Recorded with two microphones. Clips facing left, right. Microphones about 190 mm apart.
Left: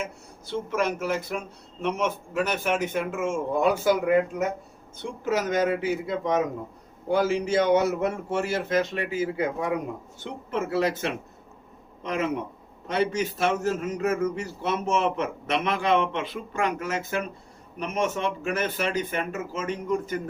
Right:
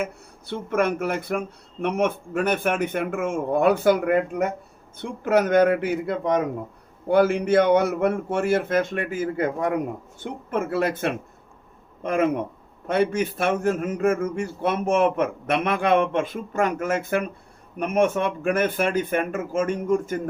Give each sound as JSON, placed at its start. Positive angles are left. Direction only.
{"t": 0.0, "sound": "speech", "side_deg": -55}